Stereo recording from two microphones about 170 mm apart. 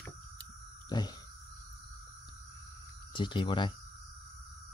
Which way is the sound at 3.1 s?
30° left (ahead or behind).